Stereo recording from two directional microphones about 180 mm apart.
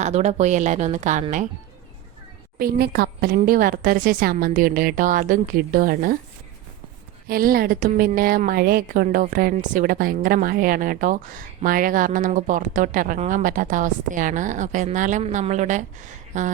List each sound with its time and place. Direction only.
0.0 s speech: 40° right (ahead or behind)
2.6 s a woman's voice: 55° right (ahead or behind)
7.3 s a woman's voice: 55° right (ahead or behind)